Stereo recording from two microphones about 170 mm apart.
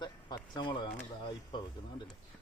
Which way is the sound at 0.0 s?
25° left (ahead or behind).